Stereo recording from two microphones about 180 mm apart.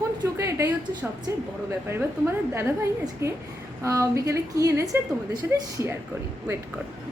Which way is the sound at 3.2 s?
15° right (ahead or behind).